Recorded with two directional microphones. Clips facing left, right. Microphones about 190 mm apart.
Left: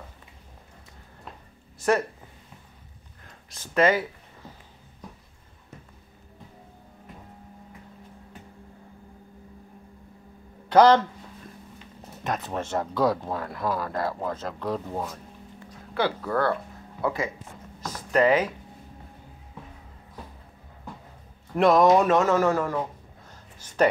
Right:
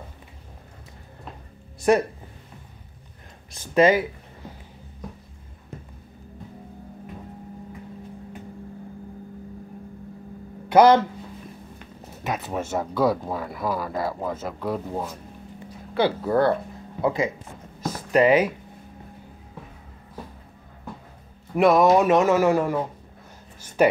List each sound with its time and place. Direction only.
1.8 s speech: 15° right (ahead or behind)
3.5 s speech: 15° right (ahead or behind)
10.7 s speech: 10° right (ahead or behind)
12.2 s speech: 5° right (ahead or behind)
16.0 s speech: 20° right (ahead or behind)
21.5 s speech: 5° right (ahead or behind)